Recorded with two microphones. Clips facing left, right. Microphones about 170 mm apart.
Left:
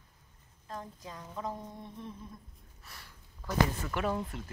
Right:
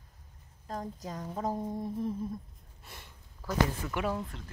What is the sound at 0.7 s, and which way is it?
A woman's voice, 40° right (ahead or behind).